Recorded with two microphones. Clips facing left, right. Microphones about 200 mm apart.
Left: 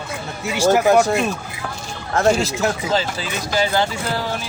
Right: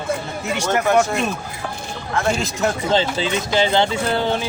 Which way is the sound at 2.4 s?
Centre (ahead or behind).